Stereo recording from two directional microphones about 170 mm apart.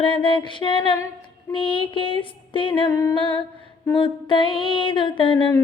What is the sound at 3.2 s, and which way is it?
Humming, 30° left (ahead or behind).